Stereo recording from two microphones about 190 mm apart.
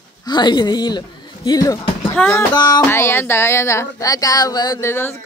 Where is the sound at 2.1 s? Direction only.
5° left (ahead or behind).